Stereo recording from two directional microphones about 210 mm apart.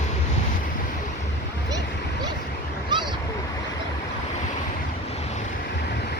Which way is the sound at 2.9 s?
20° right (ahead or behind).